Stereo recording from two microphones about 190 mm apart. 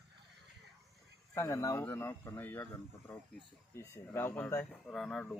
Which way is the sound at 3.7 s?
15° left (ahead or behind).